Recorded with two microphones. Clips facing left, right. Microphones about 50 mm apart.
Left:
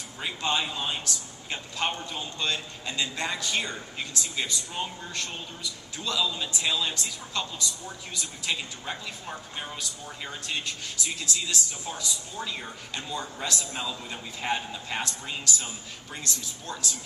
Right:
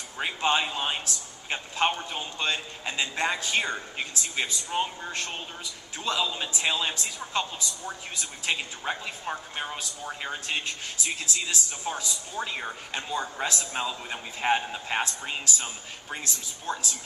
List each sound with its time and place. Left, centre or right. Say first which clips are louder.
0.2 s a woman's voice: right 3 dB; right